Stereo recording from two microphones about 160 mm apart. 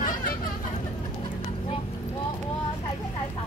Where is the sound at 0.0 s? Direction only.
60° left (ahead or behind).